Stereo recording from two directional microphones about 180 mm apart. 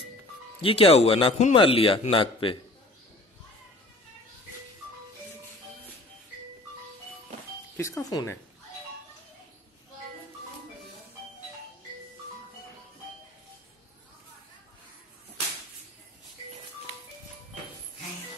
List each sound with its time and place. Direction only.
0.6 s a man's voice: 30° left (ahead or behind)
7.7 s speech: 15° left (ahead or behind)